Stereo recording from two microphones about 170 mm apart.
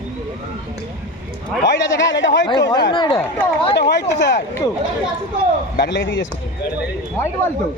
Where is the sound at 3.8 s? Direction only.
80° left.